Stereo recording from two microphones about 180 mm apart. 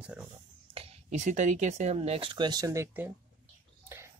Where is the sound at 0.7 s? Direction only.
35° right (ahead or behind).